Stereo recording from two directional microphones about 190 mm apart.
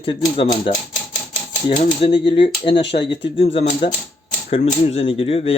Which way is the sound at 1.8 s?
30° left (ahead or behind).